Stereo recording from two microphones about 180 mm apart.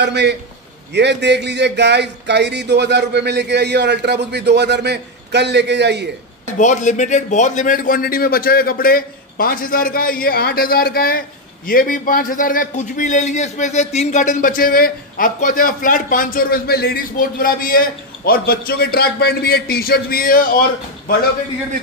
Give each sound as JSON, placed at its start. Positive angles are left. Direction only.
{"t": 0.0, "sound": "speech", "side_deg": -70}
{"t": 6.6, "sound": "a man's voice", "side_deg": 40}